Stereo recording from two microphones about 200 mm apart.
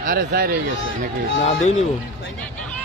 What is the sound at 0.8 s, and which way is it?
Speech, 70° left (ahead or behind).